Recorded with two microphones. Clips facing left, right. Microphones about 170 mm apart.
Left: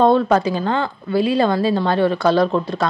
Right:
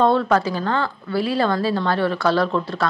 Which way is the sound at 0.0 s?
15° left (ahead or behind).